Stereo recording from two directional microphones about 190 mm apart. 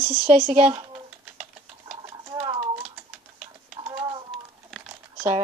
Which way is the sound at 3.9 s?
20° right (ahead or behind).